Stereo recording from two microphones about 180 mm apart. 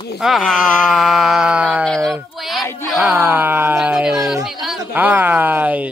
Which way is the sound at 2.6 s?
15° left (ahead or behind).